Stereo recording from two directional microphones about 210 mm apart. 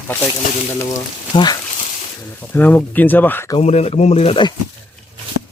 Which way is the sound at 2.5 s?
10° left (ahead or behind).